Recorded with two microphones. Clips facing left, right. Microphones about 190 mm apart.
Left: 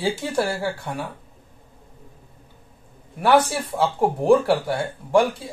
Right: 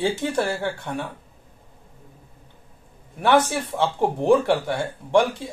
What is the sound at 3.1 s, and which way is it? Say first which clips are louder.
A man's voice: left 1 dB; 5° left (ahead or behind).